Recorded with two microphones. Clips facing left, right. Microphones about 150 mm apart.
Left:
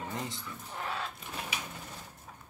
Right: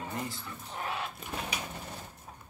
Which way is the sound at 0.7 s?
15° right (ahead or behind).